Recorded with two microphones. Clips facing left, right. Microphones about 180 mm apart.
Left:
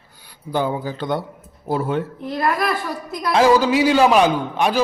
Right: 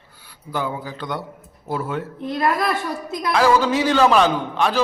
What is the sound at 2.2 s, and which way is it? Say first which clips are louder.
Speech: even; 20° right (ahead or behind).